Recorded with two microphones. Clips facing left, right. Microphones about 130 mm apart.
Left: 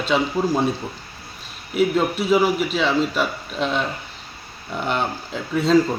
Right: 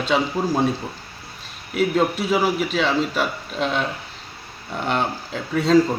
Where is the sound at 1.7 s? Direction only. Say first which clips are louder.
Even; centre (ahead or behind).